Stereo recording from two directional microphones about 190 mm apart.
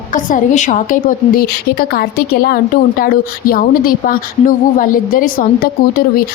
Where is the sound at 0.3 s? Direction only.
40° left (ahead or behind).